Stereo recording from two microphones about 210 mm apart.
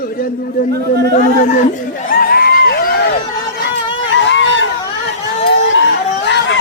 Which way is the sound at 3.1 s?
45° left (ahead or behind).